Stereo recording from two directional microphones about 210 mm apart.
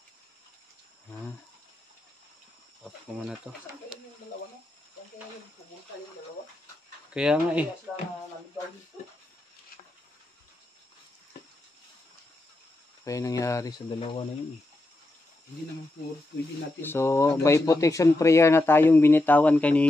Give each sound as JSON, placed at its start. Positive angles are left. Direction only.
{"t": 3.5, "sound": "speech", "side_deg": 5}
{"t": 7.2, "sound": "speech", "side_deg": -5}
{"t": 13.0, "sound": "speech", "side_deg": 15}
{"t": 16.8, "sound": "speech", "side_deg": 10}